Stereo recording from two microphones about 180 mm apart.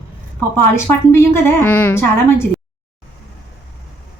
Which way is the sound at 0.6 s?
15° left (ahead or behind).